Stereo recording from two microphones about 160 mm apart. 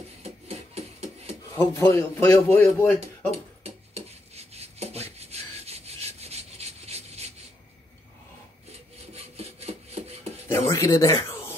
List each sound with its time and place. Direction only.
1.5 s a man's voice: 20° left (ahead or behind)
3.6 s rub: 40° right (ahead or behind)
9.1 s rub: 40° right (ahead or behind)
10.5 s a sound: 15° left (ahead or behind)